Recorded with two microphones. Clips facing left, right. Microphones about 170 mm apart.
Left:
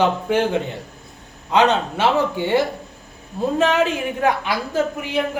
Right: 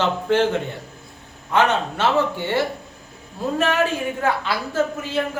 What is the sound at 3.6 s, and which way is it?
Speech, 20° left (ahead or behind).